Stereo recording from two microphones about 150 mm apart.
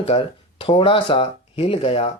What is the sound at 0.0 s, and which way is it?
Speech, 40° left (ahead or behind).